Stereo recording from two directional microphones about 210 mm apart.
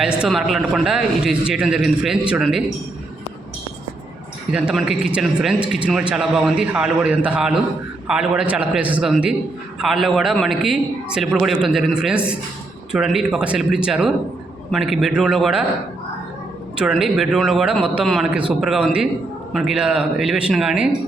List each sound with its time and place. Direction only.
0.0 s a man's voice: centre (ahead or behind)
4.5 s a man's voice: 5° right (ahead or behind)
16.7 s a man's voice: 5° right (ahead or behind)